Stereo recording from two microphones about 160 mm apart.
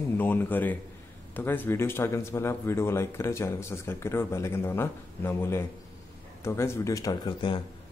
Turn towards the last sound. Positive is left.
turn(degrees=30)  # may be behind; listen again after turning